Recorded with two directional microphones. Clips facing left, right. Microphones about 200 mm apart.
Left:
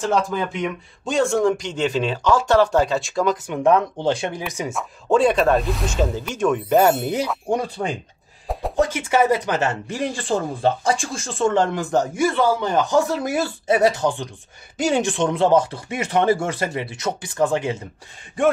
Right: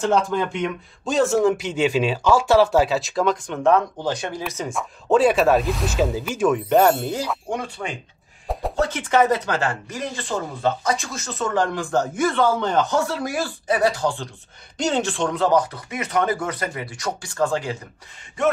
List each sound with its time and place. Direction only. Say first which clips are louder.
0.0 s speech: right 1 dB; centre (ahead or behind)
3.5 s speech: left 1 dB; 15° left (ahead or behind)
4.0 s speech: left 4 dB; 25° left (ahead or behind)
4.5 s speech: left 1 dB; 15° left (ahead or behind)
4.7 s speech: even; 5° right (ahead or behind)
7.5 s speech: left 9 dB; 35° left (ahead or behind)
8.7 s speech: left 1 dB; 10° left (ahead or behind)
9.6 s speech: left 3 dB; 25° left (ahead or behind)